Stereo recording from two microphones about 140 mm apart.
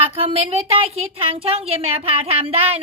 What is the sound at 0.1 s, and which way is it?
A woman's voice, 45° right (ahead or behind).